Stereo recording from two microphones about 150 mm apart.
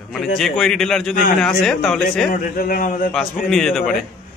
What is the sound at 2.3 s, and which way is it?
Speech, 70° left (ahead or behind).